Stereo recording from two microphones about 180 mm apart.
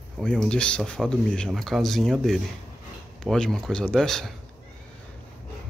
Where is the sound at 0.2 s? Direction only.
5° left (ahead or behind).